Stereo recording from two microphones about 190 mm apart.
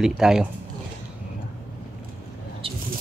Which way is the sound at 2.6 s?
30° right (ahead or behind).